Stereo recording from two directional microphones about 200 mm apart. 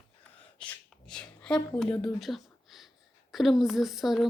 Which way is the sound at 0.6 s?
5° left (ahead or behind).